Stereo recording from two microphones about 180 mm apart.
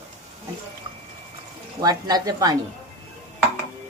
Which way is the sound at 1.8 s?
20° right (ahead or behind).